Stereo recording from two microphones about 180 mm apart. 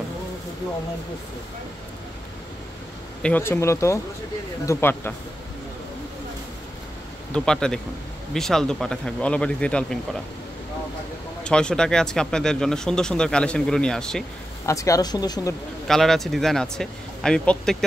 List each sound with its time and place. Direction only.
3.2 s speech: 10° left (ahead or behind)
7.3 s speech: 5° left (ahead or behind)
11.4 s speech: 5° left (ahead or behind)
14.7 s speech: 20° left (ahead or behind)
15.9 s speech: centre (ahead or behind)